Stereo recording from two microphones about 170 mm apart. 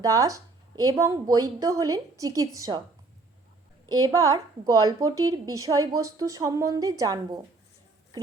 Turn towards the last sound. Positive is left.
turn(degrees=-20)  # may be behind; listen again after turning